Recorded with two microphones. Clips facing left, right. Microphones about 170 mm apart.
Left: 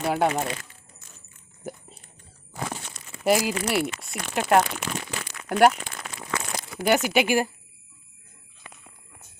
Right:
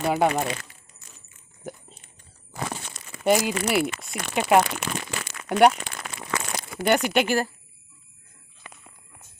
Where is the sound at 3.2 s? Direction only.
5° left (ahead or behind).